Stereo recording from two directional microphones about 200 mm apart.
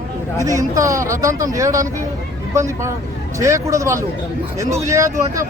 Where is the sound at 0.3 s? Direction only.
15° right (ahead or behind).